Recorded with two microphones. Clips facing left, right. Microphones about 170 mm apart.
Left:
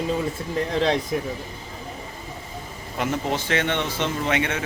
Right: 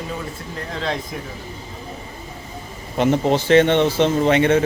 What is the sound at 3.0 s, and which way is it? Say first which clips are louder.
Speech: right 8 dB; 30° right (ahead or behind).